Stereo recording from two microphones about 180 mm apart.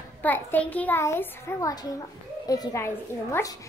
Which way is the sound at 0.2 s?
10° left (ahead or behind).